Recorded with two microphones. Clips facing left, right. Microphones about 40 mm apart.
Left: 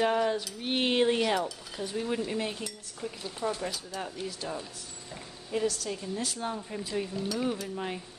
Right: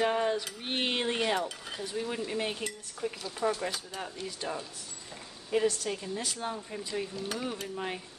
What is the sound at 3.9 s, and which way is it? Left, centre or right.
Speech, centre.